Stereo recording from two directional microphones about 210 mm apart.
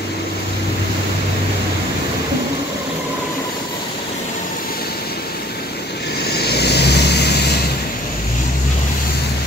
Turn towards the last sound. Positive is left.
turn(degrees=50)  # may be behind; listen again after turning